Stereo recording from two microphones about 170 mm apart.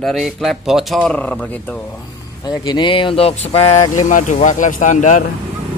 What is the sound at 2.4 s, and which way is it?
Speech, 25° left (ahead or behind).